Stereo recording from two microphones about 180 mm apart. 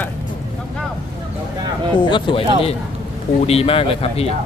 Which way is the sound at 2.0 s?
25° left (ahead or behind).